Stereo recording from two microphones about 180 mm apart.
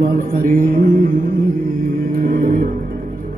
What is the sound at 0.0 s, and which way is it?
Mantra, 50° right (ahead or behind).